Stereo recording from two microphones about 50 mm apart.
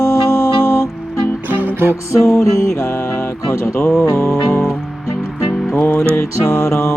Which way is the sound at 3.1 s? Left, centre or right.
Left.